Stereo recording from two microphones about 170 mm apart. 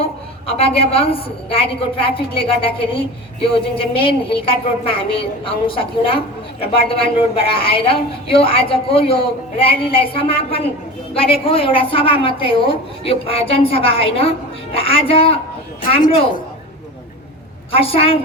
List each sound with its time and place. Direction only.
0.0 s a woman's voice: 35° left (ahead or behind)
17.7 s a woman's voice: 35° left (ahead or behind)